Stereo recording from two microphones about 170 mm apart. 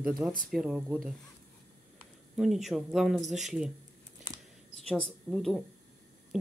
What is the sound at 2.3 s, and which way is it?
Speech, centre (ahead or behind).